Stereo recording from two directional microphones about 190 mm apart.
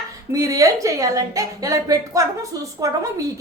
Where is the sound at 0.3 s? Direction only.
15° right (ahead or behind).